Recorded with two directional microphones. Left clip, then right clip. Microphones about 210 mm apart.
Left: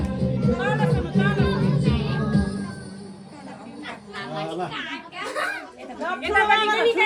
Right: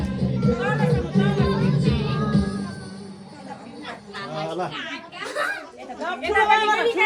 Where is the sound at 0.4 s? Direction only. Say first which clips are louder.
Right 1 dB; centre (ahead or behind).